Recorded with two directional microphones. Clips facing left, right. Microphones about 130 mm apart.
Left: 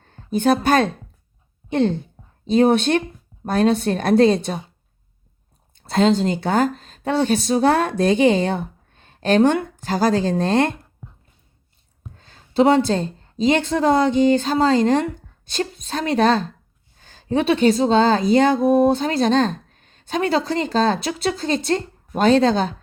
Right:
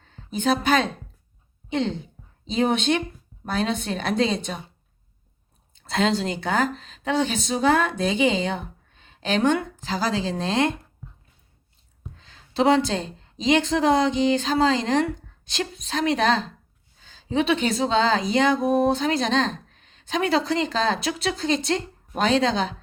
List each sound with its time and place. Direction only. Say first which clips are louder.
0.0 s a woman's voice: left 6 dB; 50° left (ahead or behind)
5.9 s a woman's voice: left 6 dB; 40° left (ahead or behind)
12.1 s a woman's voice: left 7 dB; 45° left (ahead or behind)